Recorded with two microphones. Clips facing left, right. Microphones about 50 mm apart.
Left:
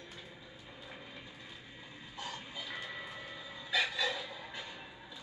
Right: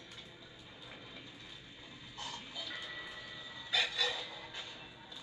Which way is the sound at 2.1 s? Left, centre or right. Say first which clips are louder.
Left 2 dB; centre.